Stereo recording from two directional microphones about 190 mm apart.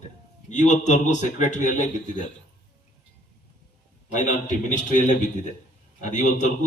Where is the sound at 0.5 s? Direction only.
40° left (ahead or behind).